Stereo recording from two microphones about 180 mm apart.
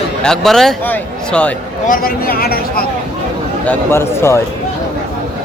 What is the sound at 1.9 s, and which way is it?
Speech, 55° left (ahead or behind).